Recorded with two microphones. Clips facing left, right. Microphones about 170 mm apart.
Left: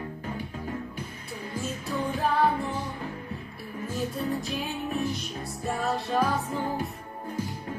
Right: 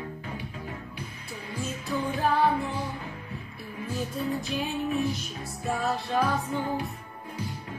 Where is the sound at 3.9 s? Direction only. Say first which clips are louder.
Even; centre (ahead or behind).